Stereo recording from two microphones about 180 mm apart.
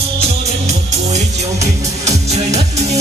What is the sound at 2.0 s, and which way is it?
Music, 35° right (ahead or behind).